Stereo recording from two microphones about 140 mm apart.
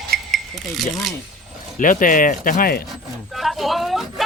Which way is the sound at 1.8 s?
70° left (ahead or behind).